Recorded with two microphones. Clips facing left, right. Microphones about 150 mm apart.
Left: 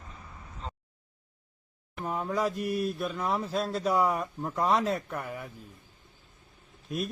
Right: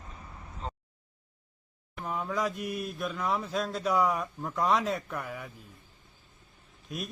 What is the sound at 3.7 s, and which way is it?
Speech, 35° left (ahead or behind).